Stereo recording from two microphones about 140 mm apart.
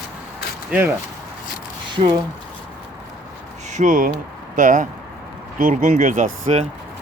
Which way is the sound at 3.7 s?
65° right (ahead or behind).